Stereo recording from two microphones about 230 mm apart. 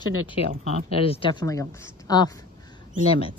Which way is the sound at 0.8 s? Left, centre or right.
Left.